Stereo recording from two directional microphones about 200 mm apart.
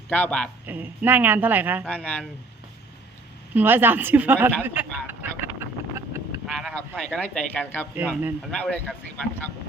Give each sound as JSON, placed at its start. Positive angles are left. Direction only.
{"t": 0.1, "sound": "speech", "side_deg": 5}
{"t": 0.7, "sound": "a woman's voice", "side_deg": -10}
{"t": 3.5, "sound": "a woman's voice", "side_deg": -10}
{"t": 4.6, "sound": "vehicle", "side_deg": -10}
{"t": 6.5, "sound": "speech", "side_deg": 0}
{"t": 7.9, "sound": "speech", "side_deg": -10}